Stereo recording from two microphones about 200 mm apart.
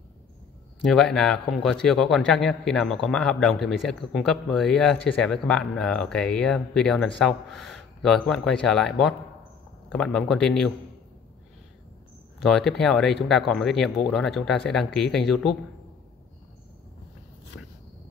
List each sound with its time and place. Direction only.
0.9 s a man's voice: 5° left (ahead or behind)
12.4 s a man's voice: centre (ahead or behind)